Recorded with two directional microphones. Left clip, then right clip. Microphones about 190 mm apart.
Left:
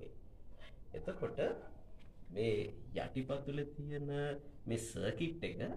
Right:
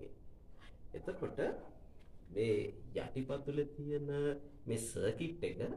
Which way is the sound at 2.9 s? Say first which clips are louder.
Left 1 dB; 20° right (ahead or behind).